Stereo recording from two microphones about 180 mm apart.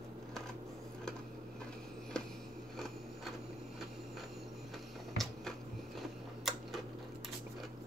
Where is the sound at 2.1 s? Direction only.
5° left (ahead or behind).